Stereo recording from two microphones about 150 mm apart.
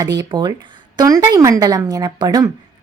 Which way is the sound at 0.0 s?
25° right (ahead or behind).